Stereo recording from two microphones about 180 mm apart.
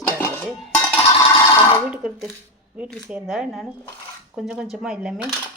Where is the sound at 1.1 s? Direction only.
30° left (ahead or behind).